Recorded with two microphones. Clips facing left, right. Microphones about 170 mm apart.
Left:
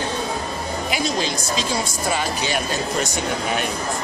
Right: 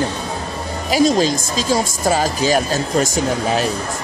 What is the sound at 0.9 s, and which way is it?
Speech, 40° right (ahead or behind).